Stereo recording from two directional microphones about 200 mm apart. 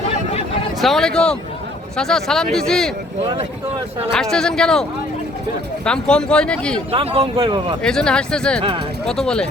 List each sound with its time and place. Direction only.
0.8 s speech: centre (ahead or behind)
4.2 s speech: centre (ahead or behind)
6.9 s speech: 30° right (ahead or behind)
7.8 s speech: 5° left (ahead or behind)